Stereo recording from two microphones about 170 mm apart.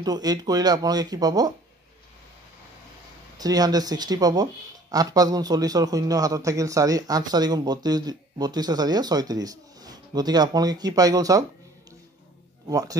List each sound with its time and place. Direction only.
0.0 s a man's voice: 25° right (ahead or behind)
3.3 s a man's voice: 20° right (ahead or behind)
12.6 s speech: 20° right (ahead or behind)